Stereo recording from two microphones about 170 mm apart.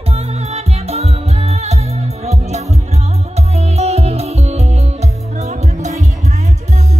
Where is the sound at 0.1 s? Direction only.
40° right (ahead or behind).